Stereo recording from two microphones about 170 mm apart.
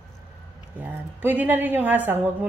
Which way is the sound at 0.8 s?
10° right (ahead or behind).